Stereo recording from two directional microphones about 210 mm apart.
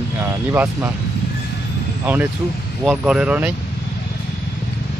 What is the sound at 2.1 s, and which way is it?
Speech, 10° right (ahead or behind).